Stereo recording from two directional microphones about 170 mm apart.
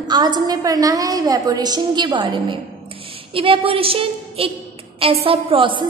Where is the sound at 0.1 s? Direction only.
25° right (ahead or behind).